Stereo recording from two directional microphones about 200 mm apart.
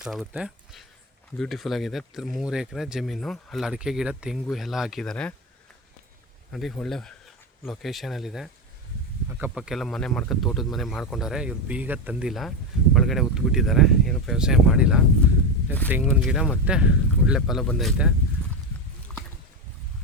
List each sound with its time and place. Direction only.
0.0 s speech: centre (ahead or behind)
6.5 s speech: centre (ahead or behind)
16.0 s speech: centre (ahead or behind)
19.1 s a sound: 5° left (ahead or behind)